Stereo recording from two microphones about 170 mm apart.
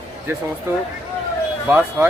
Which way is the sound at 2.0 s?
15° right (ahead or behind).